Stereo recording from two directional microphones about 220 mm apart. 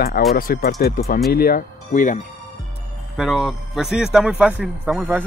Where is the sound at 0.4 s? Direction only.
45° left (ahead or behind).